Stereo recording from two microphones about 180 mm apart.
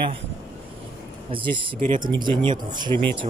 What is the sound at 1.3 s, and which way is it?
Speech, 30° right (ahead or behind).